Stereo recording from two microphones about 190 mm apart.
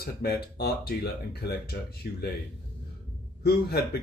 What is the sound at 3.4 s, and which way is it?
Speech, 55° left (ahead or behind).